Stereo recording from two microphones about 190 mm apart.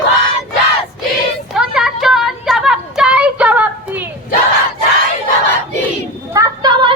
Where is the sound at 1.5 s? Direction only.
Centre (ahead or behind).